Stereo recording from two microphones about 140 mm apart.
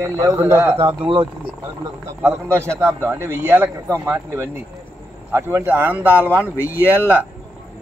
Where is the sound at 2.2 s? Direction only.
20° right (ahead or behind).